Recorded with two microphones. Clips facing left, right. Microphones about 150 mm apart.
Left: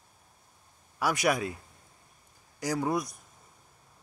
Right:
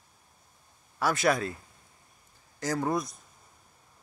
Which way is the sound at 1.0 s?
15° left (ahead or behind).